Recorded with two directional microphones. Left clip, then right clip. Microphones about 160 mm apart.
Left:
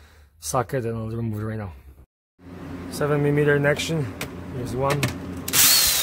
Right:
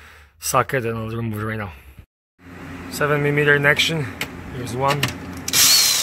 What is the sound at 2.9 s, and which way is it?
Speech, 5° left (ahead or behind).